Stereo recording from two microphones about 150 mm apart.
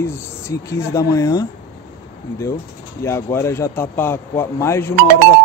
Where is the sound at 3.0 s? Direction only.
15° left (ahead or behind).